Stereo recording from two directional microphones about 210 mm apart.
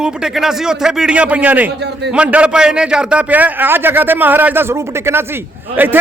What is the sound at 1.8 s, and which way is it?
Speech, 55° right (ahead or behind).